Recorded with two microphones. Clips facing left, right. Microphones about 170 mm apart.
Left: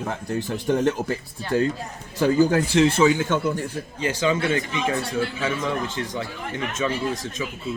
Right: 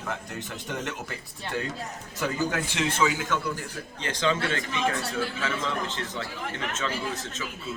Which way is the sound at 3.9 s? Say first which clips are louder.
Left 4 dB; 10° left (ahead or behind).